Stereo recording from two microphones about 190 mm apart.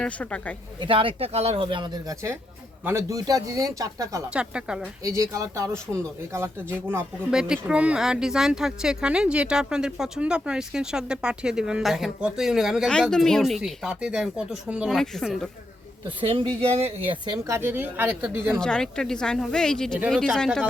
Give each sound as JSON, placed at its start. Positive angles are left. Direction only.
{"t": 0.0, "sound": "speech", "side_deg": 5}
{"t": 0.8, "sound": "speech", "side_deg": -30}
{"t": 4.3, "sound": "speech", "side_deg": -5}
{"t": 5.0, "sound": "speech", "side_deg": -15}
{"t": 16.0, "sound": "speech", "side_deg": -25}
{"t": 17.4, "sound": "speech", "side_deg": -15}
{"t": 18.6, "sound": "speech", "side_deg": 5}